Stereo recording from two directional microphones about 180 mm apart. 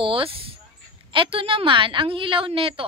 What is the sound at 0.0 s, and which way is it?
A woman's voice, 30° right (ahead or behind).